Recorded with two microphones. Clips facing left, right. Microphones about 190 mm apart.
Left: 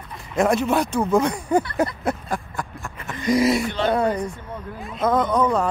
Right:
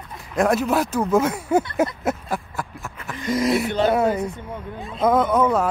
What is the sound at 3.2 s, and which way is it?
Speech, 15° left (ahead or behind).